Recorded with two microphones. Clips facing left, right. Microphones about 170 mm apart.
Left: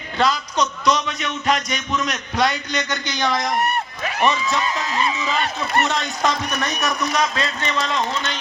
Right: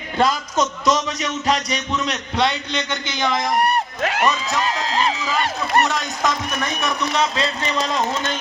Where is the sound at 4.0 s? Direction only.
85° right.